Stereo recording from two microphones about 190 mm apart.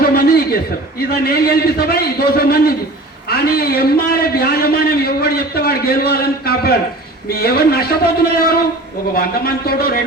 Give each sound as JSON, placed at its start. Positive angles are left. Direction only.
{"t": 0.0, "sound": "chuckle", "side_deg": 55}
{"t": 1.2, "sound": "a man's voice", "side_deg": 55}